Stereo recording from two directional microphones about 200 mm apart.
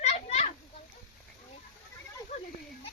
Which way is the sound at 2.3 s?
30° left (ahead or behind).